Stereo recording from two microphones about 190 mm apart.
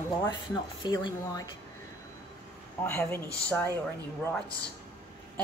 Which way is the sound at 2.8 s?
10° left (ahead or behind).